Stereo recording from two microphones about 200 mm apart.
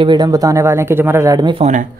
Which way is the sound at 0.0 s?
20° right (ahead or behind).